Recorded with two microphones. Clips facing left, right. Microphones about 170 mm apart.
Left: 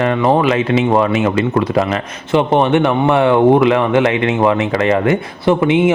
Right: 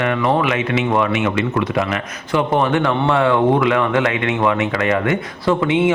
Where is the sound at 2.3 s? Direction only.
20° left (ahead or behind).